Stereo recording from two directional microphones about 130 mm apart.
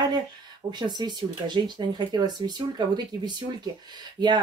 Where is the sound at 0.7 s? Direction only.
35° right (ahead or behind).